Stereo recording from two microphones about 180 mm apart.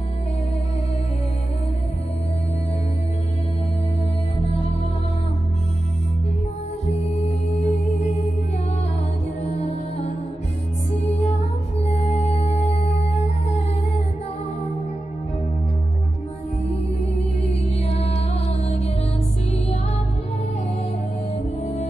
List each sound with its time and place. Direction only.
7.2 s music: 40° left (ahead or behind)
9.4 s music: 35° left (ahead or behind)
11.2 s music: 40° left (ahead or behind)
17.6 s music: 35° left (ahead or behind)